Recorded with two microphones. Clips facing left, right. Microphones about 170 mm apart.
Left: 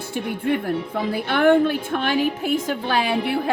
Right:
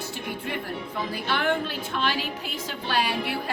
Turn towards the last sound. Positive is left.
turn(degrees=55)  # may be behind; listen again after turning